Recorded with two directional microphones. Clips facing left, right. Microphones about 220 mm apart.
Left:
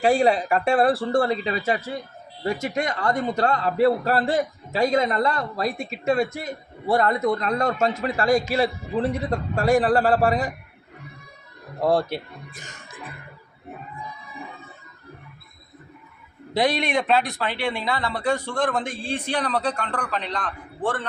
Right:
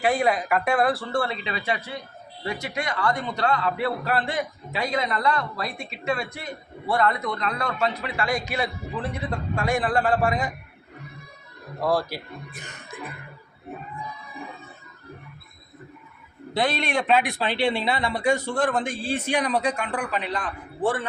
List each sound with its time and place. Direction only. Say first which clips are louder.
0.0 s speech: left 4 dB; 30° left (ahead or behind)
8.4 s speech: left 6 dB; 35° left (ahead or behind)
11.8 s speech: left 3 dB; 25° left (ahead or behind)
17.3 s a man's voice: right 3 dB; 15° right (ahead or behind)